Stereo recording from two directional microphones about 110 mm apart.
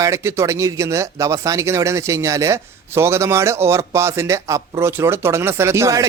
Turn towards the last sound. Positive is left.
turn(degrees=-25)  # may be behind; listen again after turning